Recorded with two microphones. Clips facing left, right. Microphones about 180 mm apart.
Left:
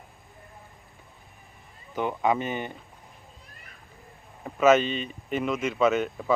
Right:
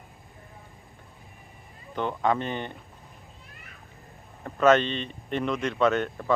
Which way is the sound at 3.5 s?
40° left (ahead or behind).